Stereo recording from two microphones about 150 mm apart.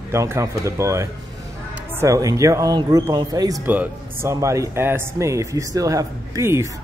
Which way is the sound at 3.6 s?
10° right (ahead or behind).